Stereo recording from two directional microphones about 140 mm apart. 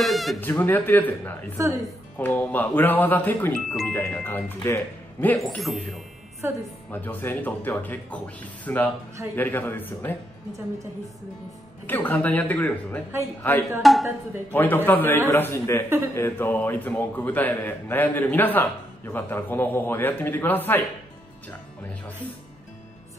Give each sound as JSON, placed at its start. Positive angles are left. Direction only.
{"t": 0.0, "sound": "speech", "side_deg": 0}
{"t": 0.4, "sound": "a man's voice", "side_deg": 15}
{"t": 3.5, "sound": "speech", "side_deg": 0}
{"t": 3.9, "sound": "a man's voice", "side_deg": 15}
{"t": 5.4, "sound": "speech", "side_deg": 0}
{"t": 6.4, "sound": "speech", "side_deg": -15}
{"t": 6.9, "sound": "a man's voice", "side_deg": 15}
{"t": 11.8, "sound": "a man's voice", "side_deg": 15}
{"t": 13.8, "sound": "speech", "side_deg": 0}
{"t": 14.5, "sound": "a man's voice", "side_deg": 15}